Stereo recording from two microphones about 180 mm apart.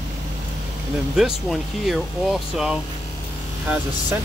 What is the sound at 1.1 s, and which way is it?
Speech, centre (ahead or behind).